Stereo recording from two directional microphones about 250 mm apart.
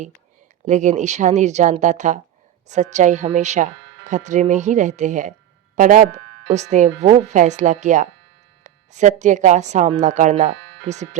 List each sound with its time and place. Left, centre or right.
0.6 s speech: right